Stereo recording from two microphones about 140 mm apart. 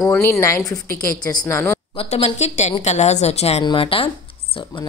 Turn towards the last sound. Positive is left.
turn(degrees=40)  # may be behind; listen again after turning